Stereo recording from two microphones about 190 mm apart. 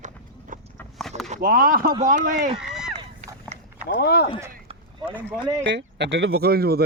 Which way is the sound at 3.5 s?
40° right (ahead or behind).